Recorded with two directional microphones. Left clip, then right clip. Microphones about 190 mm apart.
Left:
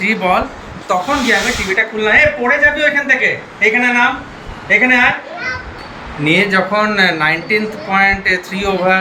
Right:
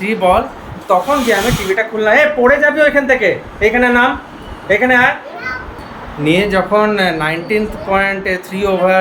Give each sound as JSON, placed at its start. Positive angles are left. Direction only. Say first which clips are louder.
{"t": 0.0, "sound": "speech", "louder": "right 2 dB", "side_deg": -15}
{"t": 6.2, "sound": "speech", "louder": "left 1 dB", "side_deg": -10}